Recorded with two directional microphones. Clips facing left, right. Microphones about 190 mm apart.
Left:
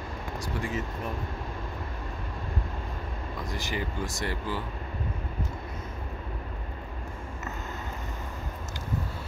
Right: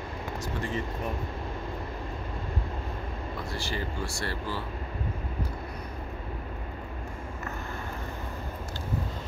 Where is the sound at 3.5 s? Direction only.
15° left (ahead or behind).